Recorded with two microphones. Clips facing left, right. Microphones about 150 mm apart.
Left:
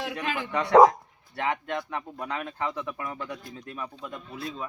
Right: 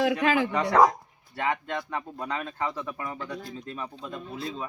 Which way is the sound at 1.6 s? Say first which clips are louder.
Even; 10° left (ahead or behind).